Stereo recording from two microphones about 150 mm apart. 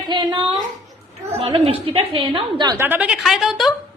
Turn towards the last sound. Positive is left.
turn(degrees=0)  # may be behind; listen again after turning